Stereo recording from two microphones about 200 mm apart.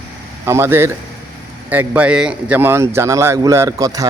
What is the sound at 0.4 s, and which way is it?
A man's voice, 15° right (ahead or behind).